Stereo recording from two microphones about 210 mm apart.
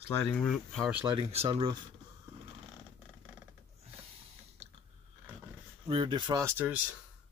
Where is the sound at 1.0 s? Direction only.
25° right (ahead or behind).